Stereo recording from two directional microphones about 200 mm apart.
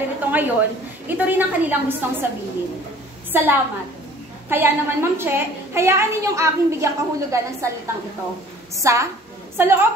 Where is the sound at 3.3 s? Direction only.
10° right (ahead or behind).